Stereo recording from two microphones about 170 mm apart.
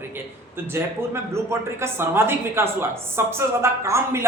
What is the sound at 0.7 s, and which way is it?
A man's voice, 15° right (ahead or behind).